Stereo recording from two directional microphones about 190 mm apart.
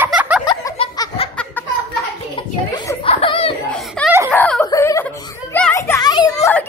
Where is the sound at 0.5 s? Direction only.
20° left (ahead or behind).